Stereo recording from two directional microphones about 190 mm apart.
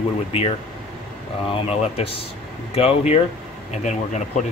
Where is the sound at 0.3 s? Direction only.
30° left (ahead or behind).